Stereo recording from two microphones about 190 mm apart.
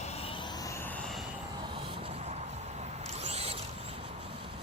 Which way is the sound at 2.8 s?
35° right (ahead or behind).